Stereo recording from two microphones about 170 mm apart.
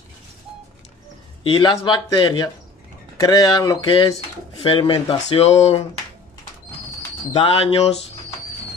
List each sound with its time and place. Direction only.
1.4 s speech: 30° left (ahead or behind)
7.3 s speech: 35° left (ahead or behind)